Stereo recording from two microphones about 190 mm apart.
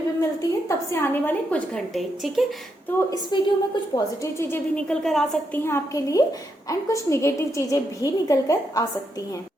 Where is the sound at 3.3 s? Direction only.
25° left (ahead or behind).